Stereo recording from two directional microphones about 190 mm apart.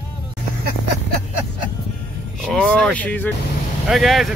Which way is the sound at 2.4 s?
5° left (ahead or behind).